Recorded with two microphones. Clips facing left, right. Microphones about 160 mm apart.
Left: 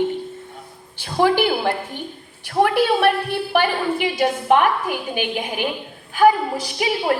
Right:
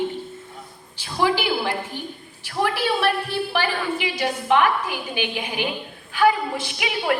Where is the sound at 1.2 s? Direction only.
50° left (ahead or behind).